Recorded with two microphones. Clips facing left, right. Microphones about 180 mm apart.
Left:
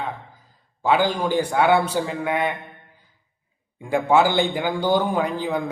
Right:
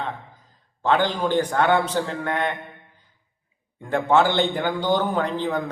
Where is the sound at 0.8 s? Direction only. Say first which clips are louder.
Left 1 dB; 10° left (ahead or behind).